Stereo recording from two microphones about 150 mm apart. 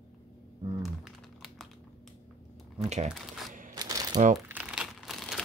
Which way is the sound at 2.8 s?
50° right (ahead or behind).